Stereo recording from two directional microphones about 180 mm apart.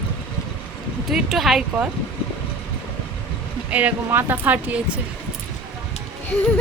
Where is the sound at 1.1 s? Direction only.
Centre (ahead or behind).